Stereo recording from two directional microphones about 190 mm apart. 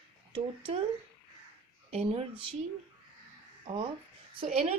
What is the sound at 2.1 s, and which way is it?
Speech, 30° right (ahead or behind).